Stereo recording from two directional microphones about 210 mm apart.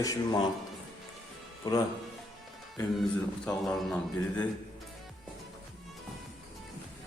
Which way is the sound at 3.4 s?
5° left (ahead or behind).